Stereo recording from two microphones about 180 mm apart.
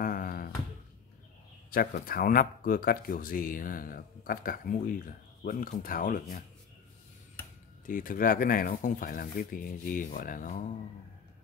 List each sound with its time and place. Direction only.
0.0 s a sound: 50° left (ahead or behind)
1.7 s speech: 55° left (ahead or behind)
7.8 s speech: 50° left (ahead or behind)